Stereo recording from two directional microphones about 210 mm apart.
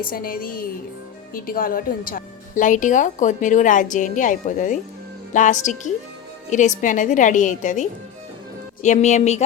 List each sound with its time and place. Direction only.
0.0 s a woman's voice: 45° left (ahead or behind)